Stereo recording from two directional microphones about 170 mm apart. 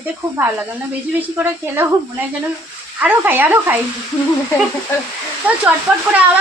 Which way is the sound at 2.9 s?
10° right (ahead or behind).